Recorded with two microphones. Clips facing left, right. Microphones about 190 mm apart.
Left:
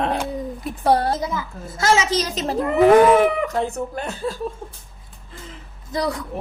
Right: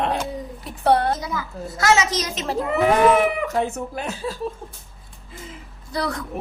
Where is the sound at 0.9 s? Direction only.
35° left (ahead or behind).